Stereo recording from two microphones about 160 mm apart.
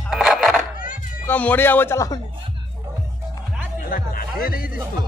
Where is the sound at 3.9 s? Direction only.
65° left (ahead or behind).